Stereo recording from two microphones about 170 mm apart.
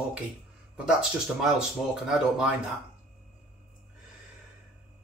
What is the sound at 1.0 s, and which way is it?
Speech, 5° right (ahead or behind).